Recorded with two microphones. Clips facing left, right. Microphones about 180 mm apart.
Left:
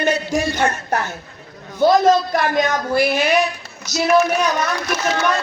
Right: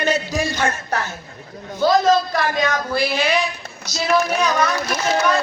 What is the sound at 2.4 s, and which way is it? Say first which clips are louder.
A man's voice: left 2 dB; 50° left (ahead or behind).